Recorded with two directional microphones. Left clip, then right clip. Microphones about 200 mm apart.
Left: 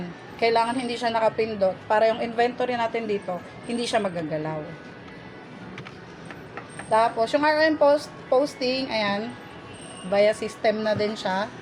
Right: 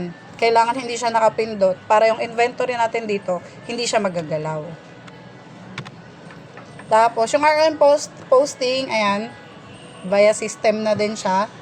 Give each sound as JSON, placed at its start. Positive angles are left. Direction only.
{"t": 0.3, "sound": "a woman's voice", "side_deg": -30}
{"t": 6.9, "sound": "a woman's voice", "side_deg": -30}